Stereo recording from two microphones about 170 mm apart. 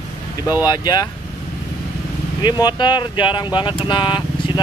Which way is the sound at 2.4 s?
25° left (ahead or behind).